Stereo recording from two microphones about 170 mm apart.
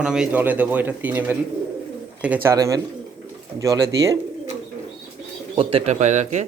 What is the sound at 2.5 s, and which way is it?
Speech, 20° right (ahead or behind).